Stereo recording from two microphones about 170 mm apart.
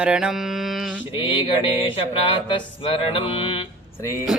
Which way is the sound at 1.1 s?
30° left (ahead or behind).